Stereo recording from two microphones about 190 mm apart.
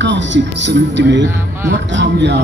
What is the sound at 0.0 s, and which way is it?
Speech, 70° right (ahead or behind).